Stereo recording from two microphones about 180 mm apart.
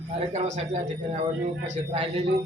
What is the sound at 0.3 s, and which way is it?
A man's voice, 40° right (ahead or behind).